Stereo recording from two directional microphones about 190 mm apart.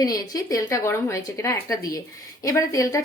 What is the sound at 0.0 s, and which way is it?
A woman's voice, 20° left (ahead or behind).